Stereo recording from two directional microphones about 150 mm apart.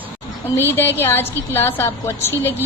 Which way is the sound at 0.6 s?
15° left (ahead or behind).